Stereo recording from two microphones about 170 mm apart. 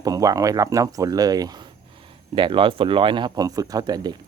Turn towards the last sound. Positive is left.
turn(degrees=-25)  # may be behind; listen again after turning